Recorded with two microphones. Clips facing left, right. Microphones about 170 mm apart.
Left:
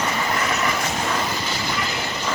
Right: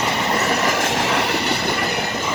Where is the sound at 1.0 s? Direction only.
80° right.